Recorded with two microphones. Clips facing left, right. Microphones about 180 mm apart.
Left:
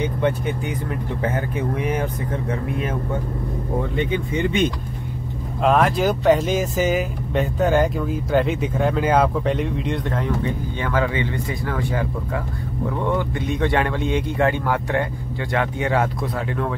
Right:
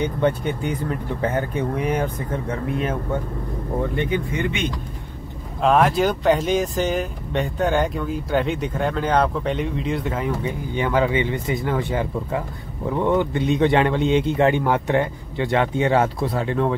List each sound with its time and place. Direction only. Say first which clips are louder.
1.3 s a man's voice: right 1 dB; 30° right (ahead or behind)
5.6 s a man's voice: right 1 dB; centre (ahead or behind); by 16.7 s 30° right (ahead or behind)